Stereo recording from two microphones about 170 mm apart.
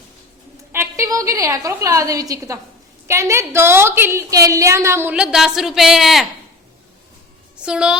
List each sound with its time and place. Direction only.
0.7 s a woman's voice: 15° right (ahead or behind)
7.5 s a woman's voice: 5° right (ahead or behind)